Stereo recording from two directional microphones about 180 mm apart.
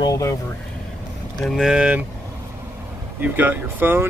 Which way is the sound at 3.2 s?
10° right (ahead or behind).